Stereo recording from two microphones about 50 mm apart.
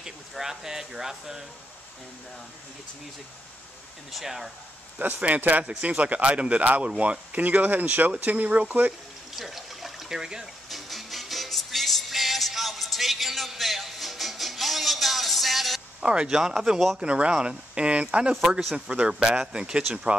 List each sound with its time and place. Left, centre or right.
0.0 s speech: centre
4.1 s speech: centre
4.9 s speech: right
9.3 s water: centre
10.4 s music: centre
16.0 s speech: centre
17.0 s speech: right